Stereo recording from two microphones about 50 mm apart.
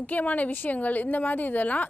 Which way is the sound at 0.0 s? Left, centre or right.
Left.